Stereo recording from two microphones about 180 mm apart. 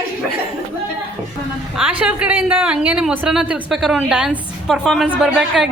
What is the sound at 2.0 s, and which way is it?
A woman's voice, 5° right (ahead or behind).